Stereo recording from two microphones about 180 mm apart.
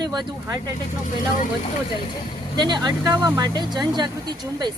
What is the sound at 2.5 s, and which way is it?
Speech, 25° right (ahead or behind).